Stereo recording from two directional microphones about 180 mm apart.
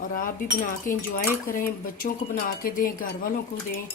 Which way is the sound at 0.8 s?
50° left (ahead or behind).